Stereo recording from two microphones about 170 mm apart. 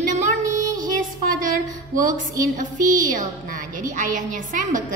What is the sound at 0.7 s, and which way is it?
Music, 55° right (ahead or behind).